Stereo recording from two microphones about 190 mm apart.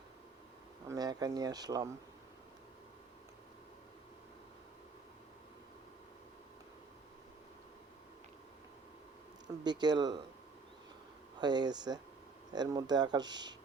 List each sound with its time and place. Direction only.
0.9 s speech: 20° right (ahead or behind)
9.6 s speech: 20° right (ahead or behind)
11.3 s speech: 20° right (ahead or behind)